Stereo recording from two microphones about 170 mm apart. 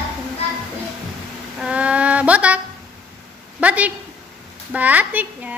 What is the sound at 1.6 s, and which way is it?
Music, 5° right (ahead or behind).